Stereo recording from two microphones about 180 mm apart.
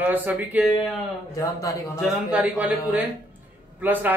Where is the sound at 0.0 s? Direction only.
10° right (ahead or behind).